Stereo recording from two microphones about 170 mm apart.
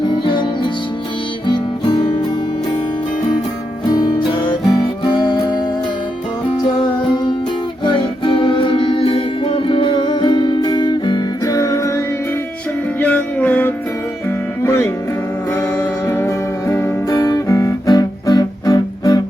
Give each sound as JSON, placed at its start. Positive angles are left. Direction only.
{"t": 1.5, "sound": "music", "side_deg": 30}
{"t": 3.8, "sound": "music", "side_deg": 25}
{"t": 7.9, "sound": "music", "side_deg": 30}